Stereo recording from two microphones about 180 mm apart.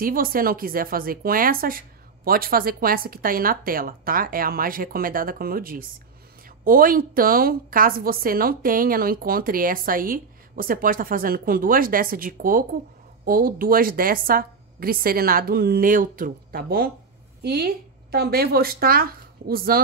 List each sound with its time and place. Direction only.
0.0 s a woman's voice: 55° right (ahead or behind)